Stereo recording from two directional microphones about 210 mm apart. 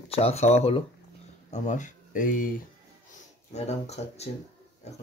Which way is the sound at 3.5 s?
30° left (ahead or behind).